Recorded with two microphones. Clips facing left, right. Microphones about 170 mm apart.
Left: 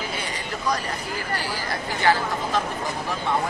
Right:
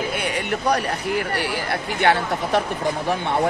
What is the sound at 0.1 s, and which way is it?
Speech, 65° right (ahead or behind).